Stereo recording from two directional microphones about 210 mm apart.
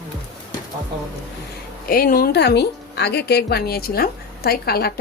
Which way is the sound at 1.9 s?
45° left (ahead or behind).